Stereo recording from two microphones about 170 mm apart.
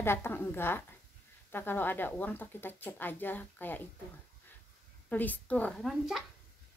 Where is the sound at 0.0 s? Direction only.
15° left (ahead or behind).